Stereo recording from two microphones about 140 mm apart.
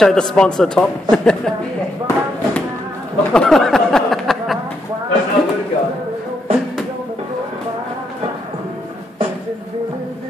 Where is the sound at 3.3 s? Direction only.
5° left (ahead or behind).